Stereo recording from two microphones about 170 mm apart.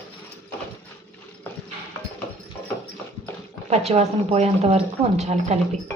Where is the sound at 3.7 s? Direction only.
40° right (ahead or behind).